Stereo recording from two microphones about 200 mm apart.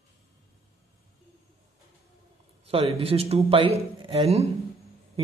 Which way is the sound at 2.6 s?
30° right (ahead or behind).